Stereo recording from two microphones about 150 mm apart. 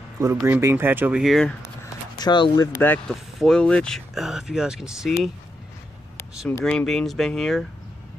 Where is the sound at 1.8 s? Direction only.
25° left (ahead or behind).